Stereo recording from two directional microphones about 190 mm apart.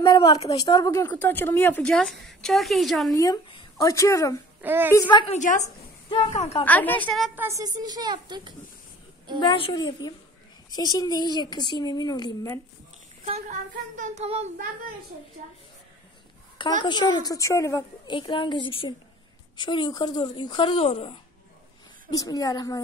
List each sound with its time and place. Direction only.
0.0 s a sound: 20° left (ahead or behind)
0.6 s a woman's voice: 20° left (ahead or behind); by 3.2 s centre (ahead or behind)
3.2 s a woman's voice: 20° left (ahead or behind)
4.6 s a child's voice: 10° right (ahead or behind)
4.9 s a woman's voice: 25° left (ahead or behind)
5.4 s speech: 40° left (ahead or behind)
6.0 s speech: 30° left (ahead or behind)
6.6 s a woman's voice: 10° left (ahead or behind)
7.2 s speech: 10° right (ahead or behind)
9.4 s a woman's voice: 25° left (ahead or behind)
13.2 s speech: 40° right (ahead or behind)
16.8 s a woman's voice: 20° left (ahead or behind)
22.1 s a woman's voice: 20° left (ahead or behind)